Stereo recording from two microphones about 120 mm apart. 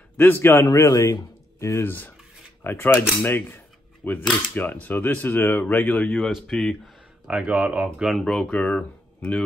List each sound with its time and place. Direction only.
0.2 s speech: 15° left (ahead or behind)
6.1 s speech: centre (ahead or behind)